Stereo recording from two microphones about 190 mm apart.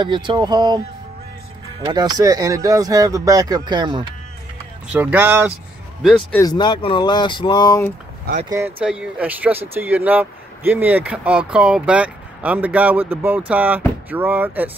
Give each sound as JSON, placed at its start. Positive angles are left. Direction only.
{"t": 0.0, "sound": "speech", "side_deg": -25}
{"t": 1.9, "sound": "speech", "side_deg": -20}
{"t": 4.9, "sound": "speech", "side_deg": -10}
{"t": 6.3, "sound": "speech", "side_deg": 20}
{"t": 8.5, "sound": "speech", "side_deg": -15}